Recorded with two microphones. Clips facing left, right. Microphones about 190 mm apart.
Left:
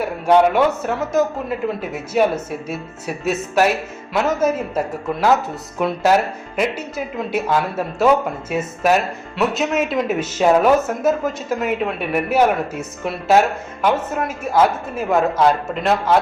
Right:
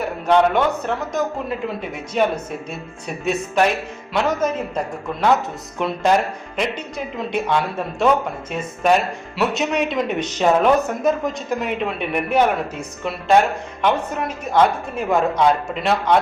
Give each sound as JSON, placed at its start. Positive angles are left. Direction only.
{"t": 0.0, "sound": "speech", "side_deg": 10}
{"t": 5.8, "sound": "speech", "side_deg": 5}